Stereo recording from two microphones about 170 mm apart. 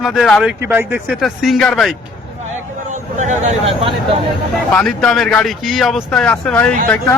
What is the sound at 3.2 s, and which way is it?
Speech, 45° right (ahead or behind).